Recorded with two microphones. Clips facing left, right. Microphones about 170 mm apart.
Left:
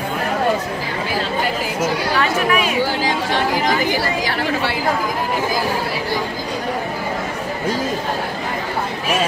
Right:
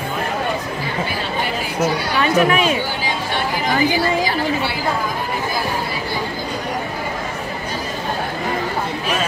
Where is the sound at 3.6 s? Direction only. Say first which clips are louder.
Right 1 dB; 85° left.